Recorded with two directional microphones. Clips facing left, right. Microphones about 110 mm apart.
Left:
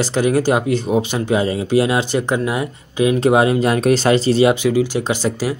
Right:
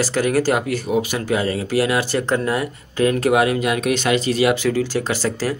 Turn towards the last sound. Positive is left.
turn(degrees=15)  # may be behind; listen again after turning